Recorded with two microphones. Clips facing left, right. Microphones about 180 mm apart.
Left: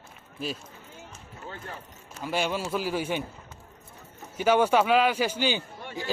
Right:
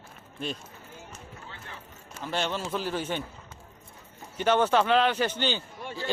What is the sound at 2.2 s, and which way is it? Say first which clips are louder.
A man's voice: left 2 dB; 10° left (ahead or behind).